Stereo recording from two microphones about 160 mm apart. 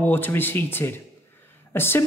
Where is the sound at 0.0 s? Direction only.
10° left (ahead or behind).